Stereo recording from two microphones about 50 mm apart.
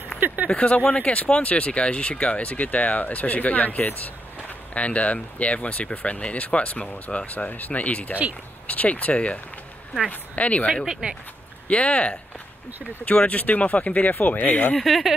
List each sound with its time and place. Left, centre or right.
0.5 s speech: left
7.2 s speech: left
10.9 s speech: centre
11.6 s speech: left
14.8 s speech: centre